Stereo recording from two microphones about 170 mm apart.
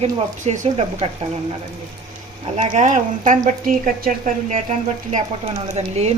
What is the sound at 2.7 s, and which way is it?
Speech, 45° right (ahead or behind).